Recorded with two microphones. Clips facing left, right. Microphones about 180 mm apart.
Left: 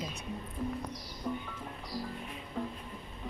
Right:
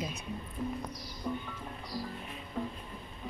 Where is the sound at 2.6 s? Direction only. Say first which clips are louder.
Even; 5° right (ahead or behind).